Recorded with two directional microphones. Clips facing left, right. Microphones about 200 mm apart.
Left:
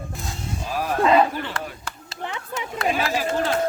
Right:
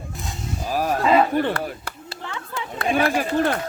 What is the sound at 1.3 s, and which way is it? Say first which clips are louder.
Speech: right 8 dB; 55° right (ahead or behind).